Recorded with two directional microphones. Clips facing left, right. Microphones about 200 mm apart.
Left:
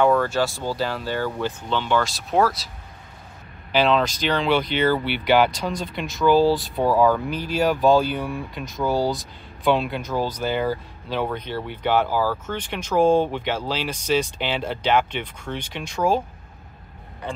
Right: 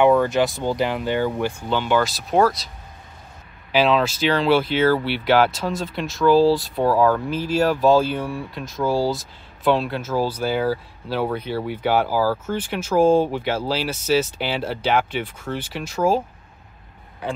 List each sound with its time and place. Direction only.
0.0 s speech: 15° right (ahead or behind); by 2.7 s 5° left (ahead or behind)
3.7 s speech: 5° right (ahead or behind)